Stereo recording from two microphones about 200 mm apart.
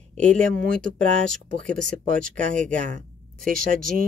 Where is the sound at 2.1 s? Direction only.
40° right (ahead or behind).